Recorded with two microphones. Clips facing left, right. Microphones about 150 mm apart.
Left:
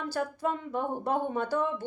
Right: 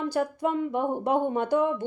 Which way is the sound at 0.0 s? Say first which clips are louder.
Right 5 dB; 10° right (ahead or behind).